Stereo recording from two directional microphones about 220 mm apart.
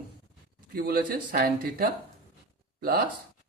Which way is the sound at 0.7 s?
45° right (ahead or behind).